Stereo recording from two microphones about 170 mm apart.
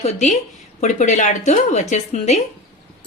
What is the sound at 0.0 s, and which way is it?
A woman's voice, 45° left (ahead or behind).